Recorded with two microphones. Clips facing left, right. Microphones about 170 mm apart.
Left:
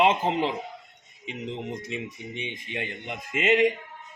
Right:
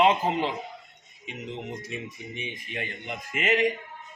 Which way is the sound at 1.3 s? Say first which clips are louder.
Left 2 dB; 25° left (ahead or behind).